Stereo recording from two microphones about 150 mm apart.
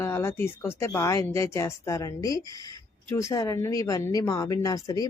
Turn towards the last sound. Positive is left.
turn(degrees=25)  # may be behind; listen again after turning